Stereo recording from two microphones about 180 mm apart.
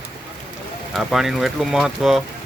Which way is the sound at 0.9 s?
Centre (ahead or behind).